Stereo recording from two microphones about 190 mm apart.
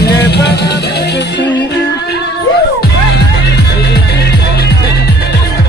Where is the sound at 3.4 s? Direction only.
60° left (ahead or behind).